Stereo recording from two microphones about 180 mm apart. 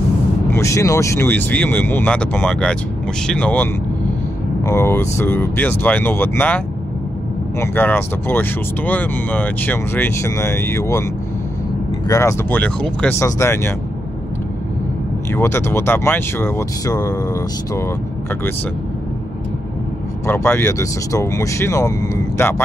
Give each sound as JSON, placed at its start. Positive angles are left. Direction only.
{"t": 0.5, "sound": "speech", "side_deg": 15}
{"t": 12.1, "sound": "speech", "side_deg": 15}
{"t": 15.3, "sound": "speech", "side_deg": 15}
{"t": 20.2, "sound": "speech", "side_deg": 10}